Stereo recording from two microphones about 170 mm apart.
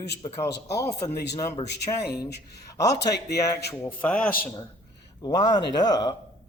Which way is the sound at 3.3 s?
20° left (ahead or behind).